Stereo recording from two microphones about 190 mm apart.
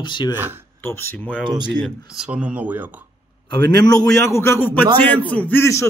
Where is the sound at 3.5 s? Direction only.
60° right (ahead or behind).